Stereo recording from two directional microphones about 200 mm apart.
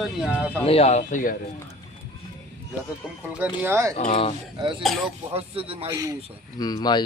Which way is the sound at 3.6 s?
15° right (ahead or behind).